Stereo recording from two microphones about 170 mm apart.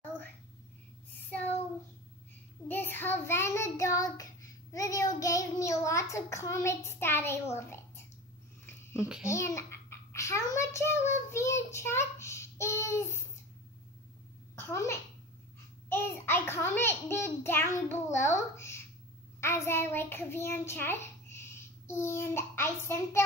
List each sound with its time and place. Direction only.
2.7 s child singing: 10° left (ahead or behind)
9.3 s child singing: 15° left (ahead or behind)
14.5 s a sound: 15° left (ahead or behind)
15.9 s child singing: 15° left (ahead or behind)
19.4 s a child's voice: 15° left (ahead or behind)